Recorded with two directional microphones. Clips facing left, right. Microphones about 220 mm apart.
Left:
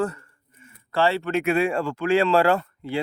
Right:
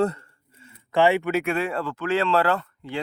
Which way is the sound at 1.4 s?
10° left (ahead or behind).